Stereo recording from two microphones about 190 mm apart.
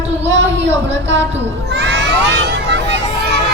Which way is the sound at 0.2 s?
70° right (ahead or behind).